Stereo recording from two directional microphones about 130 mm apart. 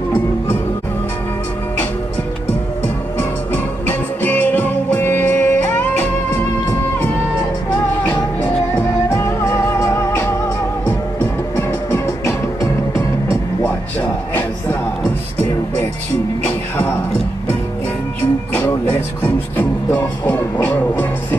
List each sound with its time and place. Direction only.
3.2 s music: 15° left (ahead or behind)
9.1 s music: 20° left (ahead or behind)
11.5 s music: 20° left (ahead or behind)
16.4 s music: 15° left (ahead or behind)
18.5 s music: 15° left (ahead or behind)
20.2 s music: 15° left (ahead or behind)